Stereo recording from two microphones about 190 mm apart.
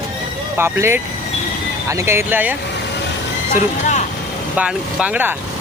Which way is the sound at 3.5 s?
40° left (ahead or behind).